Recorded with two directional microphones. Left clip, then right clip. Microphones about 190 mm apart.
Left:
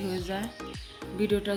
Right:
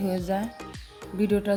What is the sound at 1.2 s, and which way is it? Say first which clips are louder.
Speech: right 3 dB; 60° right (ahead or behind).